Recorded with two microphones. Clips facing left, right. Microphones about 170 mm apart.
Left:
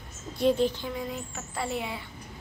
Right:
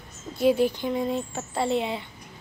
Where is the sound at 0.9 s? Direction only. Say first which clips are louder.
Right 8 dB; 30° right (ahead or behind).